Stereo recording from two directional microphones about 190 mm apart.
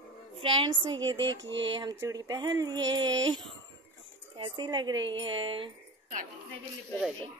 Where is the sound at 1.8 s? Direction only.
20° right (ahead or behind).